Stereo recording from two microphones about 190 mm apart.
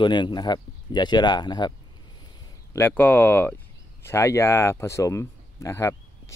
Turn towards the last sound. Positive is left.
turn(degrees=15)  # may be behind; listen again after turning